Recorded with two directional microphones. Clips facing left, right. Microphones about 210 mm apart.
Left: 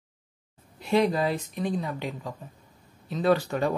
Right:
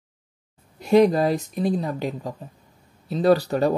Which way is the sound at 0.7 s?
40° right (ahead or behind).